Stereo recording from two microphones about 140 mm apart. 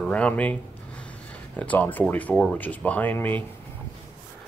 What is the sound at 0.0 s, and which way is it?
Speech, 10° left (ahead or behind).